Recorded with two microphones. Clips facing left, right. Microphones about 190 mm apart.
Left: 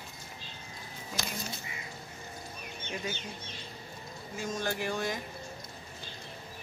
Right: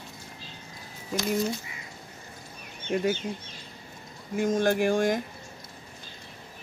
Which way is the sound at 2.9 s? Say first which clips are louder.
Right 12 dB; 55° right (ahead or behind).